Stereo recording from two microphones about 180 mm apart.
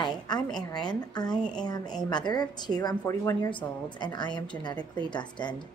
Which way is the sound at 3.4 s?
25° left (ahead or behind).